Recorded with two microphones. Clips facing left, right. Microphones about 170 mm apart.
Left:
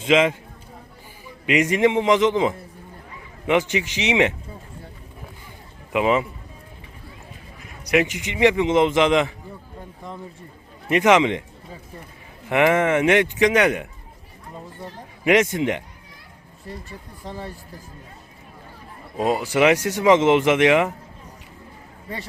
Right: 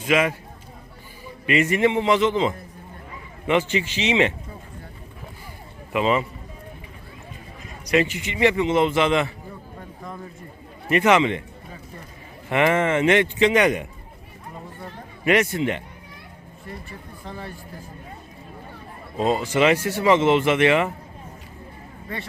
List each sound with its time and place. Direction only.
0.0 s speech: 20° left (ahead or behind)
1.5 s speech: 15° left (ahead or behind)
5.9 s speech: 15° left (ahead or behind)
7.9 s speech: 15° left (ahead or behind)
10.8 s speech: 15° left (ahead or behind)
12.5 s speech: 15° left (ahead or behind)
15.3 s speech: 15° left (ahead or behind)
17.2 s speech: 35° left (ahead or behind)
19.1 s speech: 10° left (ahead or behind)